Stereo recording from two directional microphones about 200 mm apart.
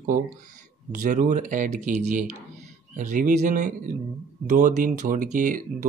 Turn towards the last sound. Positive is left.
turn(degrees=-40)  # may be behind; listen again after turning